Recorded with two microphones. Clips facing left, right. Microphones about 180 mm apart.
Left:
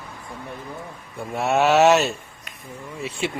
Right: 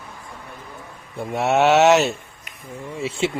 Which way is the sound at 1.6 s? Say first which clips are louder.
Right 1 dB; centre (ahead or behind).